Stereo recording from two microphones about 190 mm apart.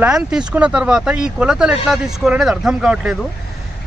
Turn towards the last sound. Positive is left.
turn(degrees=-5)  # may be behind; listen again after turning